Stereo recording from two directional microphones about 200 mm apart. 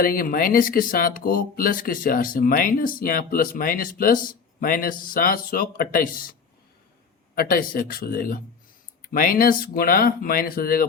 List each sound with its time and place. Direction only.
0.0 s speech: 45° left (ahead or behind)
7.3 s speech: 45° left (ahead or behind)